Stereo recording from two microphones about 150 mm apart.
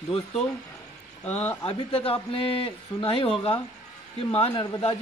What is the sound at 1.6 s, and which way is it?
A man's voice, 40° left (ahead or behind).